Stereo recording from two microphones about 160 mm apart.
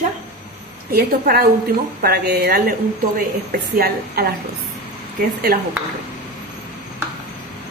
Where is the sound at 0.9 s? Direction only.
75° right (ahead or behind).